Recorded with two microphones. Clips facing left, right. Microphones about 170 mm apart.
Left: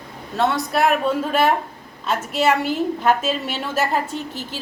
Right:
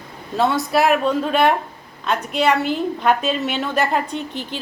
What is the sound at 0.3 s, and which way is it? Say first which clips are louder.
A woman's voice: right 2 dB; centre (ahead or behind).